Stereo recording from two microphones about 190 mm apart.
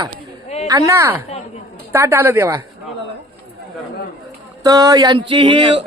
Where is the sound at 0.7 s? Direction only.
15° right (ahead or behind).